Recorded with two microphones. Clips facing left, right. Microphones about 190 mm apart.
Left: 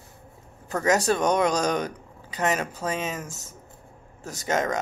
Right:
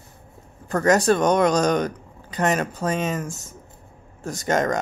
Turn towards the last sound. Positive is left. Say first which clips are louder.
# right 4 dB
turn(degrees=5)  # may be behind; listen again after turning